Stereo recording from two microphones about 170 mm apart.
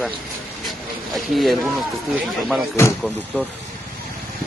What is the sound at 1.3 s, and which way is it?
Speech, centre (ahead or behind).